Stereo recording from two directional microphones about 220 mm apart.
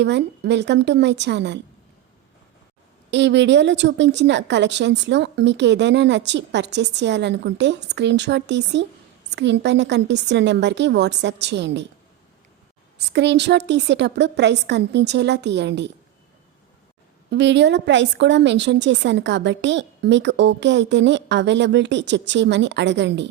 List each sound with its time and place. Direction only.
0.0 s a woman's voice: 50° right (ahead or behind)
3.1 s a woman's voice: 55° right (ahead or behind)
13.1 s a woman's voice: 50° right (ahead or behind)
17.3 s a woman's voice: 55° right (ahead or behind)